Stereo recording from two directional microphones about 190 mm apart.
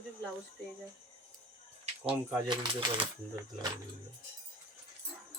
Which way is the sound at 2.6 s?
25° right (ahead or behind).